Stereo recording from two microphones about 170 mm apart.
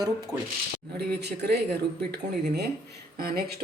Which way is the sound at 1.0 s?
70° right (ahead or behind).